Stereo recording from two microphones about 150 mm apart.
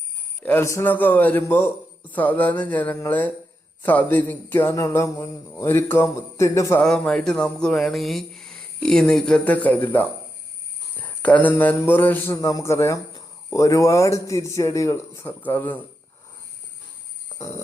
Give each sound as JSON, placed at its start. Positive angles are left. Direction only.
{"t": 0.4, "sound": "a man's voice", "side_deg": 15}
{"t": 6.8, "sound": "a man's voice", "side_deg": 5}
{"t": 17.3, "sound": "a sound", "side_deg": 20}